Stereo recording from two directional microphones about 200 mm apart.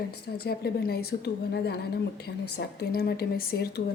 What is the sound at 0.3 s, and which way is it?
A woman's voice, 50° left (ahead or behind).